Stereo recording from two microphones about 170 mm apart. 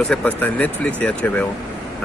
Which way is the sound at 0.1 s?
10° left (ahead or behind).